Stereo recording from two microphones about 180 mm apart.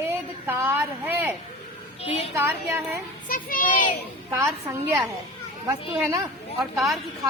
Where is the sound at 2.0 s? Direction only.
35° left (ahead or behind).